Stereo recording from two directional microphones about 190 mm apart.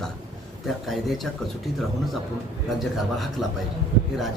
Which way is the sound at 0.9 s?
Centre (ahead or behind).